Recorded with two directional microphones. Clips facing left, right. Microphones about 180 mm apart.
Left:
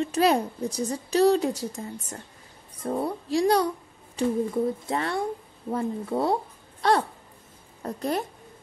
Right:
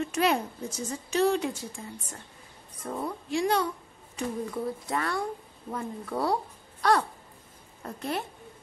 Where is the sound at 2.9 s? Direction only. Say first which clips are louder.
Left 5 dB; 35° left (ahead or behind).